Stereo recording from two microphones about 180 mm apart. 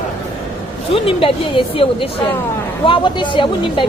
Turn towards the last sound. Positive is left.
turn(degrees=25)  # may be behind; listen again after turning